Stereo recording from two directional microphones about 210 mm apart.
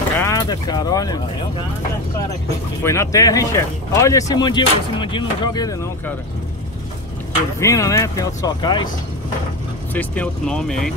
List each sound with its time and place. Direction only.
0.2 s speech: 15° left (ahead or behind)
2.8 s speech: 15° left (ahead or behind)
7.6 s speech: 15° left (ahead or behind)
9.9 s speech: 5° left (ahead or behind)